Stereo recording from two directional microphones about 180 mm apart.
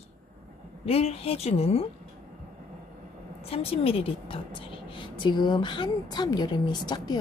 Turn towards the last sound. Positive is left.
turn(degrees=25)  # may be behind; listen again after turning